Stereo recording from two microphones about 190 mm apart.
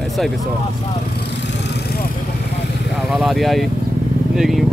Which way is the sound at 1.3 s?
65° left (ahead or behind).